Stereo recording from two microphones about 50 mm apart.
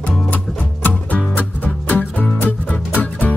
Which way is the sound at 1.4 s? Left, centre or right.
Left.